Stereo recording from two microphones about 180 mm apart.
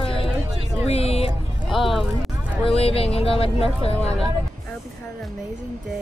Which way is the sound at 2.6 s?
35° left (ahead or behind).